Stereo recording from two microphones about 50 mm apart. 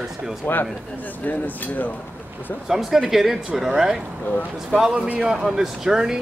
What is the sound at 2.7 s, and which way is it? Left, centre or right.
Speech, centre.